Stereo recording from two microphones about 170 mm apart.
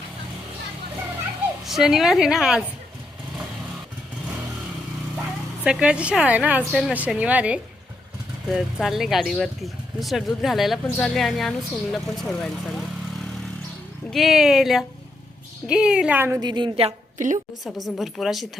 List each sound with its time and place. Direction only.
1.6 s speech: centre (ahead or behind)
5.6 s a woman's voice: 5° right (ahead or behind)
14.1 s a woman's voice: centre (ahead or behind)
16.4 s a woman's voice: 25° right (ahead or behind)
17.2 s a woman's voice: 45° right (ahead or behind)
17.6 s speech: centre (ahead or behind)